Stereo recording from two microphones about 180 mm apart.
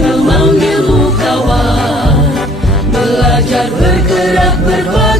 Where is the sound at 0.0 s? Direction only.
Centre (ahead or behind).